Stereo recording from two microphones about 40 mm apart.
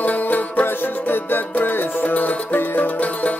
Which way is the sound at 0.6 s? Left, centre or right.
Left.